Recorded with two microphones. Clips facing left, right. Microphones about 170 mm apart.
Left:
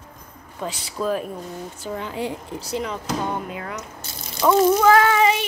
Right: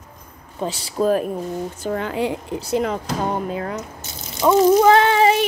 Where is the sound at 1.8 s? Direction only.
60° right (ahead or behind); by 2.6 s 80° right.